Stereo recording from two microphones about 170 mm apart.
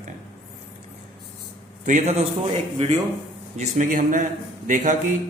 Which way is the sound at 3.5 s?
45° right (ahead or behind).